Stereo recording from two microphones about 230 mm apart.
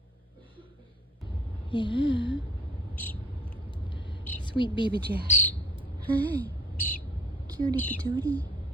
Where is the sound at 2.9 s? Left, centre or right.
Centre.